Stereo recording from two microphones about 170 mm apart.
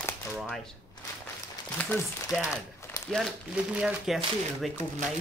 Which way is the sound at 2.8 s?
15° left (ahead or behind).